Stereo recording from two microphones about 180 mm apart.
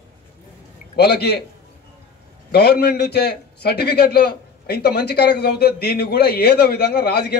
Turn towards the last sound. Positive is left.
turn(degrees=60)  # may be behind; listen again after turning